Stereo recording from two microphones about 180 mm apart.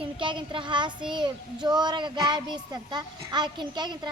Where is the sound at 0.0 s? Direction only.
25° right (ahead or behind).